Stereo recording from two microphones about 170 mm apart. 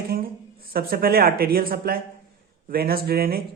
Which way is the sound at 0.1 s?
60° right (ahead or behind).